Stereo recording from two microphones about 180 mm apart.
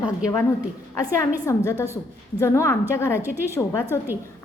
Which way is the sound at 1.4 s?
15° left (ahead or behind).